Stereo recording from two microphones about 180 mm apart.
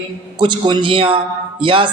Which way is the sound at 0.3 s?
25° right (ahead or behind).